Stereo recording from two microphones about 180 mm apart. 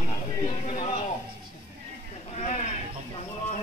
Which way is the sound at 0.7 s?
40° left (ahead or behind).